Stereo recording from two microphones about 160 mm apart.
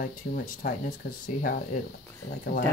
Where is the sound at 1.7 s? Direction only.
60° left (ahead or behind).